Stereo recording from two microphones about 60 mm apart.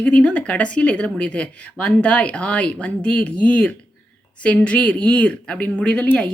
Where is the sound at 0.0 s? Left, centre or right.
Left.